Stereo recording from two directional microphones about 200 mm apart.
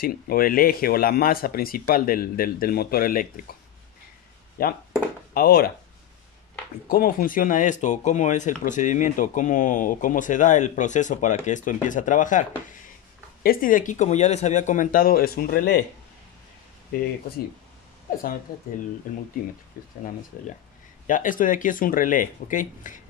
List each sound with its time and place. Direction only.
0.0 s speech: 45° left (ahead or behind)
4.6 s speech: 50° left (ahead or behind)
6.9 s speech: 45° left (ahead or behind)
18.1 s speech: 45° left (ahead or behind)
19.7 s speech: 45° left (ahead or behind)
21.1 s speech: 40° left (ahead or behind)